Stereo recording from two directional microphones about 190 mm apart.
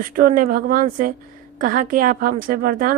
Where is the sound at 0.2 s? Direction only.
50° right (ahead or behind).